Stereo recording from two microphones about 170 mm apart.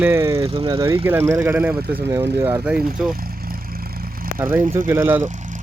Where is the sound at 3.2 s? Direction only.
60° right (ahead or behind).